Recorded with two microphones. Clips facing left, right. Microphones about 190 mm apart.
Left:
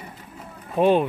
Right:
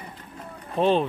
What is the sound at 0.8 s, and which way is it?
Speech, 10° left (ahead or behind).